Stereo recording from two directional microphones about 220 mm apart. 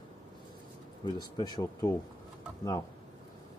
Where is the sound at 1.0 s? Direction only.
20° left (ahead or behind).